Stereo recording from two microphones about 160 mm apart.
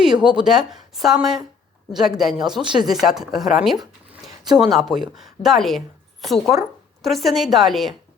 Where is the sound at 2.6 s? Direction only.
30° right (ahead or behind).